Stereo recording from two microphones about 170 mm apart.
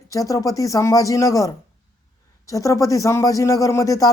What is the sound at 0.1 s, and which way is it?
Speech, 20° left (ahead or behind).